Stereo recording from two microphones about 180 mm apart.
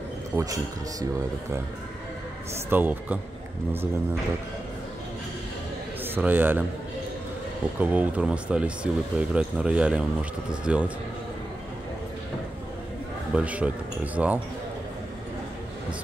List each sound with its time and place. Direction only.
0.4 s speech: 20° right (ahead or behind)
2.7 s speech: 10° right (ahead or behind)
6.0 s a man's voice: 10° right (ahead or behind)
7.8 s speech: 10° right (ahead or behind)
13.3 s speech: 5° right (ahead or behind)